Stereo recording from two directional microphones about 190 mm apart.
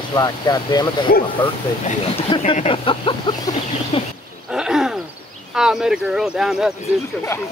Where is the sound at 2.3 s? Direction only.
35° left (ahead or behind).